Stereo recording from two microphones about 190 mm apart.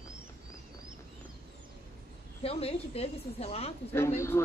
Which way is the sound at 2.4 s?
30° left (ahead or behind).